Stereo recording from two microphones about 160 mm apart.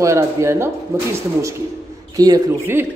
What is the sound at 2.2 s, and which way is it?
Speech, 20° right (ahead or behind).